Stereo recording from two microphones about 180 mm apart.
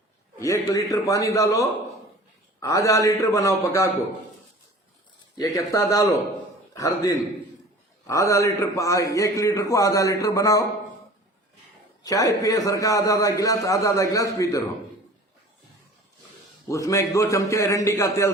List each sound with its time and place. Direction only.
0.3 s a man's voice: 15° left (ahead or behind)
5.5 s a man's voice: 20° left (ahead or behind)
12.0 s a man's voice: 20° left (ahead or behind)
16.6 s a man's voice: 15° left (ahead or behind)